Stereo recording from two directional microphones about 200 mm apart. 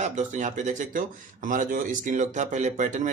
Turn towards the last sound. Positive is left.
turn(degrees=-40)  # may be behind; listen again after turning